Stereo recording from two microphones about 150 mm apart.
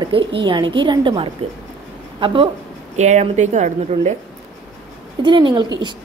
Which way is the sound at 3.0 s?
50° right (ahead or behind).